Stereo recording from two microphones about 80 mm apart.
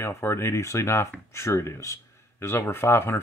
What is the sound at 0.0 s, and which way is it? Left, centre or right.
Speech, left.